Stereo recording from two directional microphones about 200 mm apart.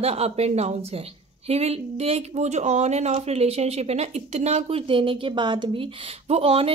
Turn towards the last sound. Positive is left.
turn(degrees=-30)  # may be behind; listen again after turning